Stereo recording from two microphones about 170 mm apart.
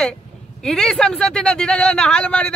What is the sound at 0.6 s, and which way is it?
Speech, 5° left (ahead or behind).